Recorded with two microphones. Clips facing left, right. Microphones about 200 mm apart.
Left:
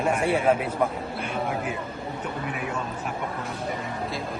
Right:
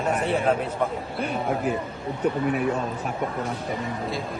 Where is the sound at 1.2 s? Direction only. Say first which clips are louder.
Right 4 dB; 40° right (ahead or behind).